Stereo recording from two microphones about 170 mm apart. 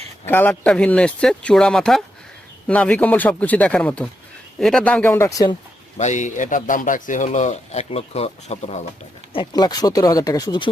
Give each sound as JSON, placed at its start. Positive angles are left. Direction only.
{"t": 0.3, "sound": "speech", "side_deg": 10}
{"t": 6.0, "sound": "a man's voice", "side_deg": 45}
{"t": 9.3, "sound": "speech", "side_deg": 25}